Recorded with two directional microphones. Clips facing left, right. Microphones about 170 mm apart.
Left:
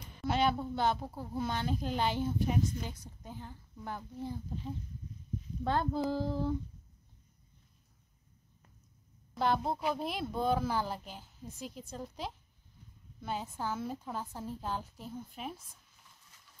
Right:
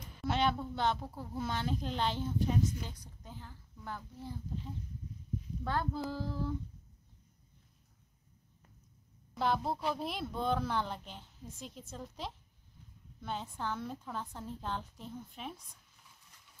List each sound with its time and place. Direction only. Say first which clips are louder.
0.2 s a woman's voice: left 2 dB; 5° left (ahead or behind)
5.6 s child singing: left 4 dB; 25° left (ahead or behind)
9.3 s a woman's voice: left 2 dB; centre (ahead or behind)